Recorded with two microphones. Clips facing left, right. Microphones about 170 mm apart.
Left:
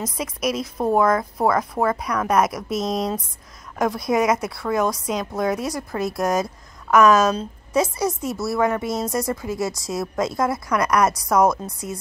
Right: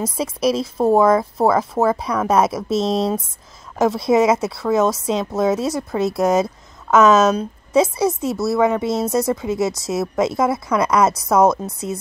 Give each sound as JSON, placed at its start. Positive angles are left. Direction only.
{"t": 0.0, "sound": "a woman's voice", "side_deg": -30}